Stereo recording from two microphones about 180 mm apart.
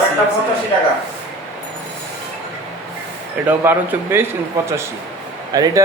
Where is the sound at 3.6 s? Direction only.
15° right (ahead or behind).